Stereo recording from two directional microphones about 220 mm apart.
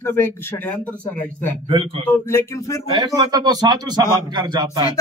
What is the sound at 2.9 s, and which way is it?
A man's voice, 20° right (ahead or behind).